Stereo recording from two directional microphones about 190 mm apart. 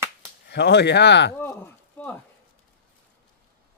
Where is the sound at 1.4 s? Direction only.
10° left (ahead or behind).